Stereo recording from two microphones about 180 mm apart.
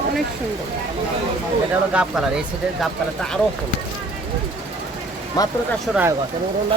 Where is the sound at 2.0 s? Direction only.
5° right (ahead or behind).